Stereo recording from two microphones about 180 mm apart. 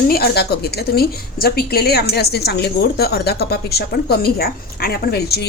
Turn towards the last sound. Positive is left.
turn(degrees=60)  # may be behind; listen again after turning